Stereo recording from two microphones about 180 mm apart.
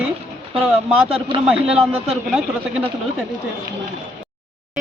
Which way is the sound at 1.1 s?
30° right (ahead or behind).